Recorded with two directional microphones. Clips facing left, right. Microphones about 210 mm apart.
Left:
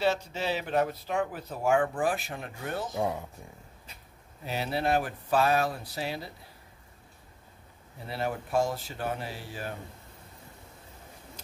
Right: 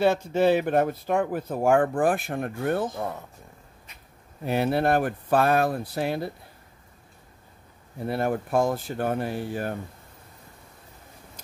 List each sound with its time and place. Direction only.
0.0 s speech: 50° right (ahead or behind)
3.0 s speech: 10° left (ahead or behind)
4.5 s speech: 55° right (ahead or behind)
8.0 s speech: 50° right (ahead or behind)